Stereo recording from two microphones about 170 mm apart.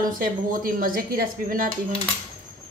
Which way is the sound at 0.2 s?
55° right (ahead or behind).